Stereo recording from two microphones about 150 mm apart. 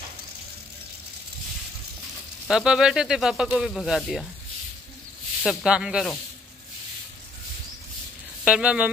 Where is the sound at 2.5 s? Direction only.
5° right (ahead or behind).